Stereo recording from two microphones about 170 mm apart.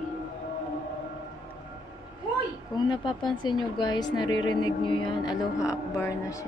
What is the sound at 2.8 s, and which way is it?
A woman's voice, 25° left (ahead or behind).